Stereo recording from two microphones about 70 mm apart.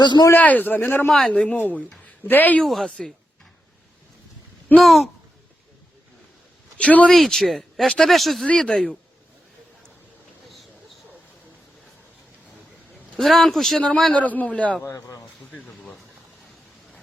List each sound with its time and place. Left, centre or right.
0.0 s a man's voice: left
0.3 s speech: left
1.0 s speech: centre
2.6 s speech: centre
4.8 s speech: centre
6.7 s speech: centre
7.1 s speech: centre
8.4 s speech: centre
13.1 s speech: centre
14.1 s speech: left
14.9 s speech: left
15.5 s a sound: centre